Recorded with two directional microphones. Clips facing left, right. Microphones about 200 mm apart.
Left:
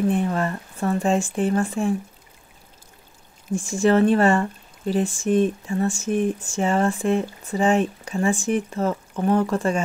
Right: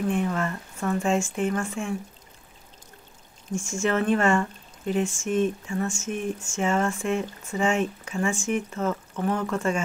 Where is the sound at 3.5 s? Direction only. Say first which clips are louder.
Left 7 dB; 35° left (ahead or behind).